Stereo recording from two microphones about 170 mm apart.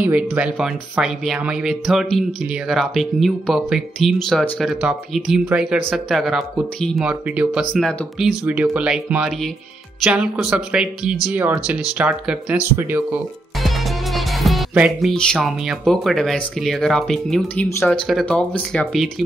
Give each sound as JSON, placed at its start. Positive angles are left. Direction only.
{"t": 0.0, "sound": "speech", "side_deg": -10}
{"t": 13.6, "sound": "speech", "side_deg": 0}